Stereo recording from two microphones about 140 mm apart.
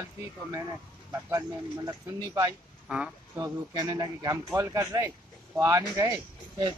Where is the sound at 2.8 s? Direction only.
5° right (ahead or behind).